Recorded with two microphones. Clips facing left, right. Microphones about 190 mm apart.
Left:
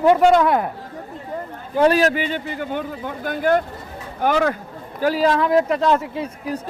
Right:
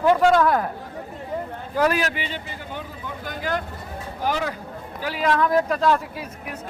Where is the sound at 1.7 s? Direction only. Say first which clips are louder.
Left 6 dB; 30° left (ahead or behind); by 4.6 s 55° left (ahead or behind).